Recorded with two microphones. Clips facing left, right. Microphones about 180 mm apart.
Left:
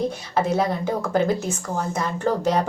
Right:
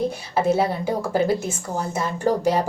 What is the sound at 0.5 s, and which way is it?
Speech, 10° right (ahead or behind).